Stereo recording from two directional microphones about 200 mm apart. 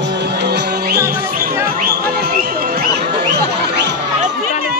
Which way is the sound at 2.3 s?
55° right (ahead or behind).